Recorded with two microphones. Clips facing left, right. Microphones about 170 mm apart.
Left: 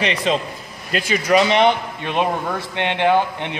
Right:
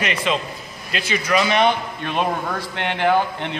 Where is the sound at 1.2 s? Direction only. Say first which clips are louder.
Left 3 dB; 25° left (ahead or behind).